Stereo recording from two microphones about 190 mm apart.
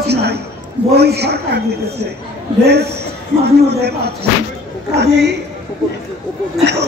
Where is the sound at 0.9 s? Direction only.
60° right (ahead or behind).